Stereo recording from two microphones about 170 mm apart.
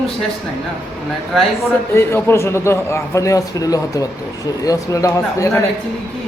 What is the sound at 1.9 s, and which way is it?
A man's voice, 15° left (ahead or behind).